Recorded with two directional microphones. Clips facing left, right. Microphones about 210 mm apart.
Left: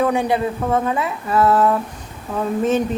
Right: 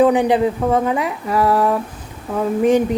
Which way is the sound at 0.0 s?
15° right (ahead or behind).